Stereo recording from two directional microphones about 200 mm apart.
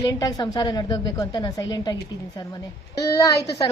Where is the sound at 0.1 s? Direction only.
20° left (ahead or behind).